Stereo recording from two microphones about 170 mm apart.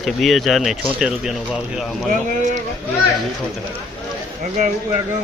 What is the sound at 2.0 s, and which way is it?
Speech, 45° right (ahead or behind).